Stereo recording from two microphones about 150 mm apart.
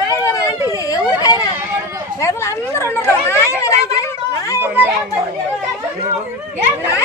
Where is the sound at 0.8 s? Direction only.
25° left (ahead or behind).